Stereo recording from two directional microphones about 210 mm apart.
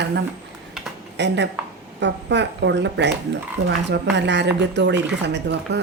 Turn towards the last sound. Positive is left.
turn(degrees=-55)  # may be behind; listen again after turning